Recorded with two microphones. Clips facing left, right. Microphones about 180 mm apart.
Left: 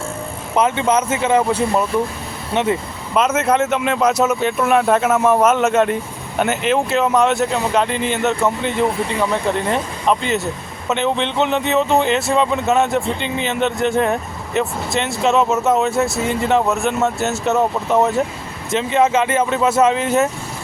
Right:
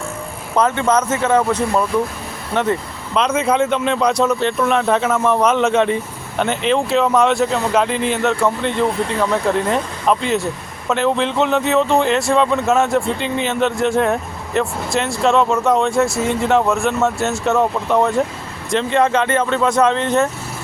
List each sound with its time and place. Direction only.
0.6 s speech: 10° left (ahead or behind)
3.2 s speech: 5° left (ahead or behind)